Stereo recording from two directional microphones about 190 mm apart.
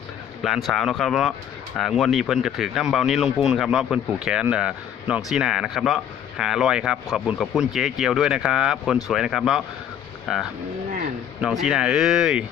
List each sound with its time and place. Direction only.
0.4 s speech: centre (ahead or behind)